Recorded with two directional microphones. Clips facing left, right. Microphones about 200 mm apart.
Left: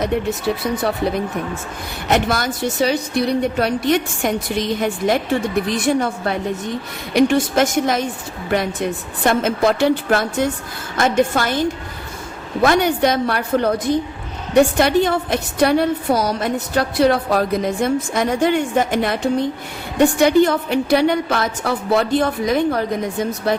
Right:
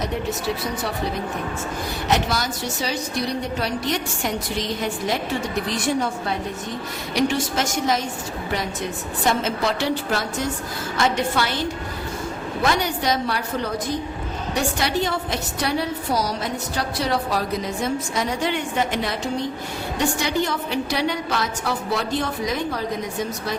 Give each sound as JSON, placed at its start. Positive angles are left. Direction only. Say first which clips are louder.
{"t": 0.0, "sound": "a woman's voice", "louder": "left 6 dB", "side_deg": 55}
{"t": 2.0, "sound": "a woman's voice", "louder": "left 5 dB", "side_deg": 55}
{"t": 12.6, "sound": "a woman's voice", "louder": "left 7 dB", "side_deg": 55}